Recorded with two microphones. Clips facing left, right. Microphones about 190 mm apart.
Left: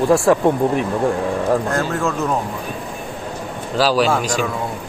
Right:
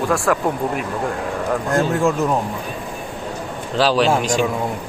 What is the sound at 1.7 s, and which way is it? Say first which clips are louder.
Speech: right 3 dB; 10° right (ahead or behind).